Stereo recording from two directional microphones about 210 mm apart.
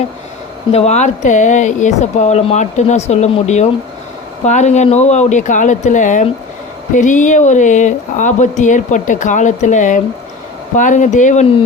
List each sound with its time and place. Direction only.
0.7 s speech: 30° left (ahead or behind)